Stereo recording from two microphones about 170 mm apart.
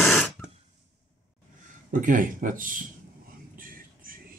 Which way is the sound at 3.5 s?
55° right (ahead or behind).